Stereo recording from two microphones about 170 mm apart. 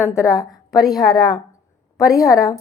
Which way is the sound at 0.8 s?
Centre (ahead or behind).